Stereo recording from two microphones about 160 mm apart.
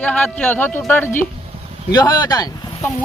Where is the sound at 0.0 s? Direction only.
10° left (ahead or behind).